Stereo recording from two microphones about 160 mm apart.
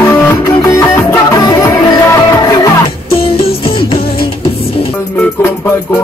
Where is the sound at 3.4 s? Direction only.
35° left (ahead or behind).